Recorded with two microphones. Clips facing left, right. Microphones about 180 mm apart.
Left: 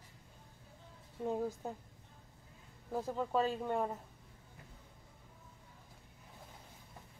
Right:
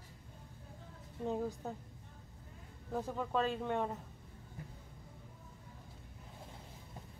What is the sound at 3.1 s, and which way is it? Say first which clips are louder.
Speech: left 2 dB; 15° left (ahead or behind).